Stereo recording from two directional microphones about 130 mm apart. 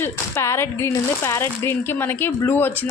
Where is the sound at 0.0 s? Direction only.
20° left (ahead or behind).